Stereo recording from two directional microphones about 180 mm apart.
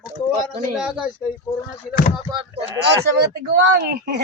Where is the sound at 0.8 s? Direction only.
5° right (ahead or behind).